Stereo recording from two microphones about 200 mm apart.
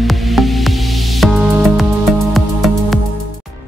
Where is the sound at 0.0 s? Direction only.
Centre (ahead or behind).